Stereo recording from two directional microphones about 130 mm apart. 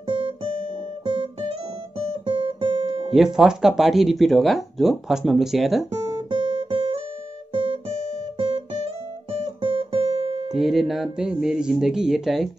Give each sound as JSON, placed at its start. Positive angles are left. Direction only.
{"t": 0.0, "sound": "guitar", "side_deg": -40}
{"t": 3.1, "sound": "speech", "side_deg": -5}
{"t": 5.9, "sound": "guitar", "side_deg": -30}
{"t": 10.5, "sound": "speech", "side_deg": 0}